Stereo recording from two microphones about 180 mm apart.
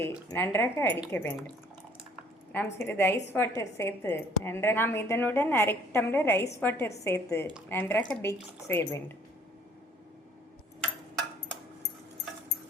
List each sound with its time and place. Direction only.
0.0 s a woman's voice: 15° left (ahead or behind)
2.8 s a woman's voice: 15° left (ahead or behind)